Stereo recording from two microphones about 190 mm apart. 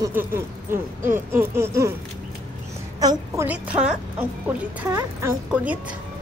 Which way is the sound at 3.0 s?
20° right (ahead or behind).